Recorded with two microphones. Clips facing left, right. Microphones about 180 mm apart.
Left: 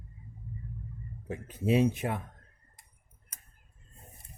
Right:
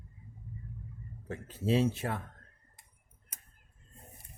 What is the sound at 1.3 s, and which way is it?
Speech, 15° left (ahead or behind).